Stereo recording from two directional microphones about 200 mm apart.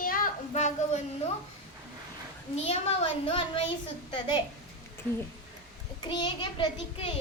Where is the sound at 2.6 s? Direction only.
30° left (ahead or behind).